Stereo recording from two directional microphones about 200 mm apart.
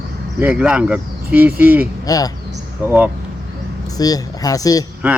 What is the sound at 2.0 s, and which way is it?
Speech, 20° left (ahead or behind).